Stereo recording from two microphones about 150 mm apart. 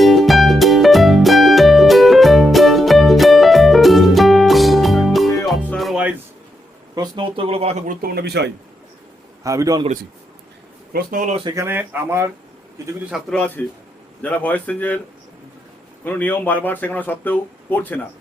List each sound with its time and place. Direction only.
0.0 s music: centre (ahead or behind)
6.9 s speech: 30° right (ahead or behind)
7.9 s speech: 85° right
9.4 s a man's voice: 20° right (ahead or behind)
10.9 s speech: 60° right (ahead or behind)
11.5 s speech: 15° right (ahead or behind)
13.1 s a man's voice: 5° right (ahead or behind)
13.6 s speech: 10° left (ahead or behind)
16.0 s speech: 15° left (ahead or behind)